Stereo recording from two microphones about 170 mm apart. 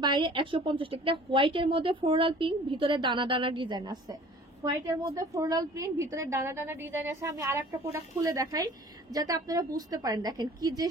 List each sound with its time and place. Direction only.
0.0 s a woman's voice: 25° right (ahead or behind)